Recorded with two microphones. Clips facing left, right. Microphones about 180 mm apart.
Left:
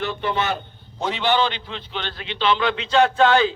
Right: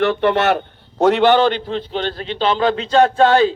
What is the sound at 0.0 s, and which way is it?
A man's voice, 65° right (ahead or behind).